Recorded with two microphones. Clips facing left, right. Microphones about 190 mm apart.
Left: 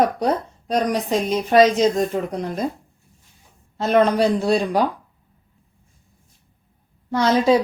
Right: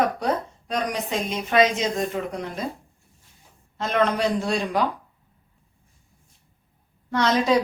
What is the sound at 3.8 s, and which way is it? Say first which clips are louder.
A woman's voice: left 6 dB; 35° left (ahead or behind).